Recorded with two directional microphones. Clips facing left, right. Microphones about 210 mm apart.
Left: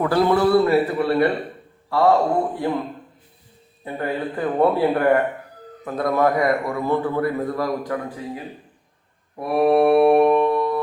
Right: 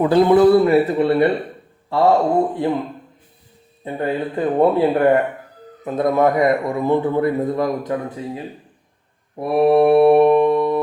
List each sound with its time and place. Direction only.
0.0 s a man's voice: 20° right (ahead or behind)
2.6 s a man's voice: 25° right (ahead or behind)
3.8 s a man's voice: 20° right (ahead or behind)
9.3 s mantra: 25° right (ahead or behind)